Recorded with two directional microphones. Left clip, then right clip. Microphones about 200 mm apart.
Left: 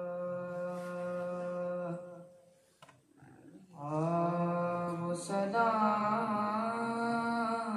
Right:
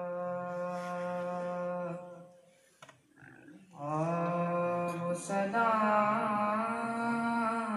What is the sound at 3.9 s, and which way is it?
Mantra, 15° right (ahead or behind).